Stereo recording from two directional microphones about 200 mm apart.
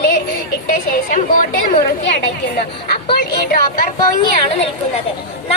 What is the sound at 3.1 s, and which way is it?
Speech, 45° left (ahead or behind).